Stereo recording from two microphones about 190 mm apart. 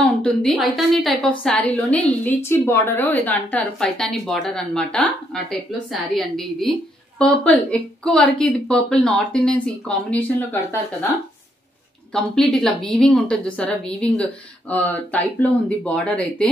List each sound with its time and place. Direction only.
0.0 s a woman's voice: 5° left (ahead or behind)
12.1 s a woman's voice: centre (ahead or behind)